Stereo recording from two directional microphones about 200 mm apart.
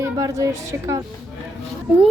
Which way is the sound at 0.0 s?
15° right (ahead or behind).